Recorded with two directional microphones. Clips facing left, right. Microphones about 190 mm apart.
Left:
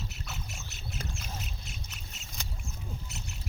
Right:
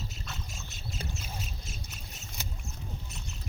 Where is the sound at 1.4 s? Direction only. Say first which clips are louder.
Right 1 dB; 65° left (ahead or behind).